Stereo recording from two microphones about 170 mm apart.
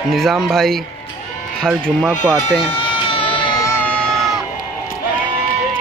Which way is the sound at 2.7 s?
30° left (ahead or behind).